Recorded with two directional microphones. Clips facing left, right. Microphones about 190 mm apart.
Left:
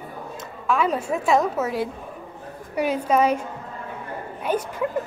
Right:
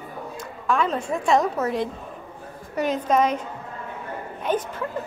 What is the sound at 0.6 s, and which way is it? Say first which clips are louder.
A woman's voice: left 1 dB; 5° left (ahead or behind).